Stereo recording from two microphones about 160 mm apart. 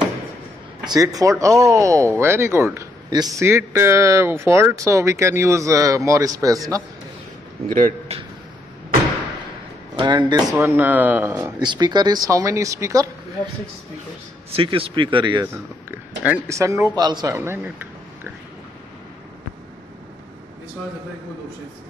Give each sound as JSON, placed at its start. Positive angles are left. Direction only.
{"t": 0.8, "sound": "speech", "side_deg": -20}
{"t": 8.1, "sound": "a man's voice", "side_deg": -40}
{"t": 9.9, "sound": "speech", "side_deg": -30}
{"t": 10.8, "sound": "speech", "side_deg": -10}
{"t": 11.6, "sound": "speech", "side_deg": -30}
{"t": 14.5, "sound": "speech", "side_deg": -35}
{"t": 16.3, "sound": "speech", "side_deg": -20}
{"t": 17.4, "sound": "a sound", "side_deg": -15}